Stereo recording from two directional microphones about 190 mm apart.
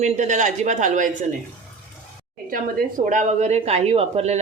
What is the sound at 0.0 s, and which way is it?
Speech, 40° right (ahead or behind).